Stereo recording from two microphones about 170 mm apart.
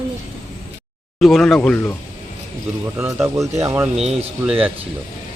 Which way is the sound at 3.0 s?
15° right (ahead or behind).